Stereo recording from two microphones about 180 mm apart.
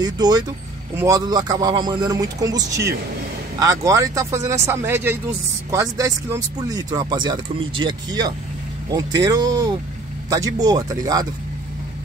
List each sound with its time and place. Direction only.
0.0 s speech: 20° right (ahead or behind)